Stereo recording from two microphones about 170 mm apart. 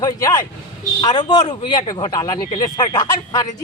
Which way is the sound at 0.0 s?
20° left (ahead or behind).